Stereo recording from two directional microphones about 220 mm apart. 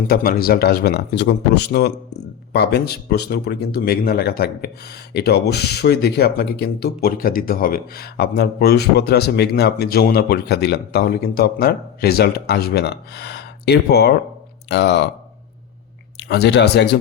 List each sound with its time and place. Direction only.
0.1 s speech: 40° left (ahead or behind)
16.1 s speech: 50° left (ahead or behind)